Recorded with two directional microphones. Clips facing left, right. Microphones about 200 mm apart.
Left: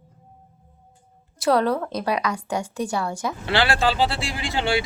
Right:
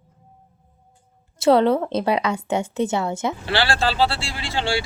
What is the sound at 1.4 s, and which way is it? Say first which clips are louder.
A woman's voice: right 4 dB; 25° right (ahead or behind).